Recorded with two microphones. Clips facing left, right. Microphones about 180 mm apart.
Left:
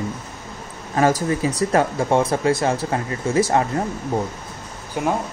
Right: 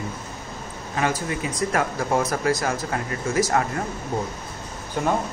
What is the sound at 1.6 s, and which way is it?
Speech, 30° left (ahead or behind).